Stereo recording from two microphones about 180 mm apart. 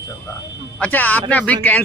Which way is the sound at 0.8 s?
10° left (ahead or behind).